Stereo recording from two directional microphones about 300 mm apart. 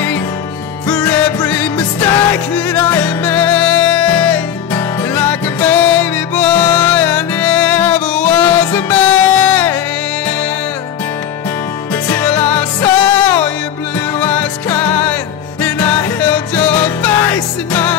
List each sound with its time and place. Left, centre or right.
0.8 s music: centre
11.9 s music: centre